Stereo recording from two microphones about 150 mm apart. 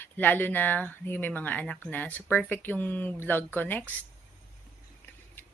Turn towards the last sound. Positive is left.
turn(degrees=10)  # may be behind; listen again after turning